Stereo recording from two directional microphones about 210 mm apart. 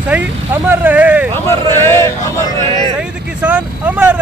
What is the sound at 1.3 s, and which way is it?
Speech, 10° left (ahead or behind).